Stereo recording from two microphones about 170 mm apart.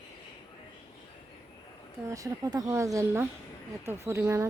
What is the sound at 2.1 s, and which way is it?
A woman's voice, 20° right (ahead or behind).